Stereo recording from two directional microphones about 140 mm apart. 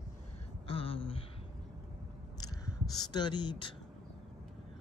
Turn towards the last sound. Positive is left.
turn(degrees=35)  # may be behind; listen again after turning